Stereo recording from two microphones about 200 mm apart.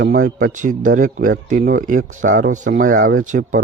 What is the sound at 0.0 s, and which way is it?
Speech, 45° right (ahead or behind).